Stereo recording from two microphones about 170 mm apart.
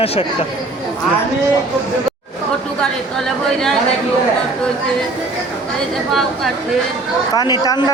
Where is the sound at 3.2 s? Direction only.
Centre (ahead or behind).